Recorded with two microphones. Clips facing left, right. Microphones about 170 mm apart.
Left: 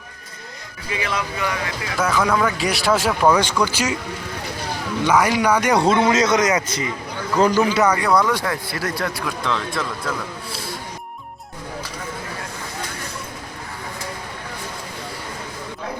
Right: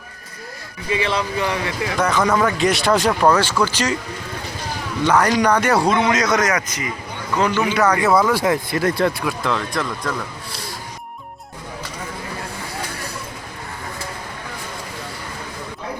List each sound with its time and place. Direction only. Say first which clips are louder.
0.9 s speech: right 4 dB; 25° right (ahead or behind)
2.0 s speech: right 1 dB; centre (ahead or behind)
5.0 s a man's voice: right 1 dB; 10° left (ahead or behind); by 7.8 s 35° left (ahead or behind)
8.0 s speech: right 2 dB; 5° right (ahead or behind)
8.4 s speech: right 6 dB; 25° right (ahead or behind)
9.2 s speech: right 2 dB; 5° right (ahead or behind)